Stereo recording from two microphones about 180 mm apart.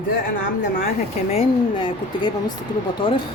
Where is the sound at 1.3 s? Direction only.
25° left (ahead or behind).